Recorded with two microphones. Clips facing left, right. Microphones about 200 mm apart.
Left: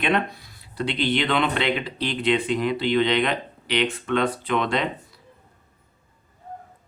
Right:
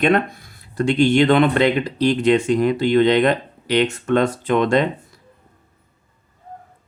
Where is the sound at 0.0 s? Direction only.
45° right (ahead or behind).